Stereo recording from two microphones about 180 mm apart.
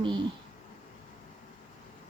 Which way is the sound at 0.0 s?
25° right (ahead or behind).